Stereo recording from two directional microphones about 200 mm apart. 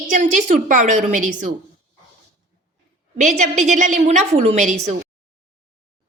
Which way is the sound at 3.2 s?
35° right (ahead or behind).